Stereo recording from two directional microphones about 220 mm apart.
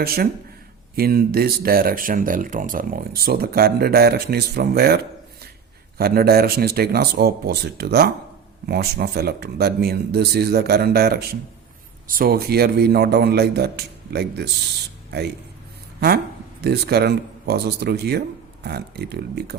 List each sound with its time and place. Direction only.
0.0 s speech: 45° right (ahead or behind)
6.0 s speech: 45° right (ahead or behind)
16.0 s speech: 45° right (ahead or behind)